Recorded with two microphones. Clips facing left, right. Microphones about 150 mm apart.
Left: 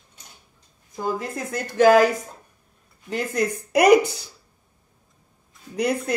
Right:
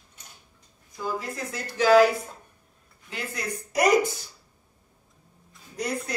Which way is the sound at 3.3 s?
65° left (ahead or behind).